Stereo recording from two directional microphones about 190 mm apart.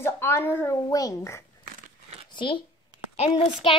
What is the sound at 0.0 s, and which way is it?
A child's voice, 10° left (ahead or behind).